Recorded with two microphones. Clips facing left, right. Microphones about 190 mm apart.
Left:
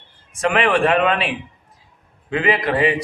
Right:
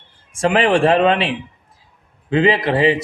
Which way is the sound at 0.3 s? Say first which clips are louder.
Right 3 dB; 30° right (ahead or behind).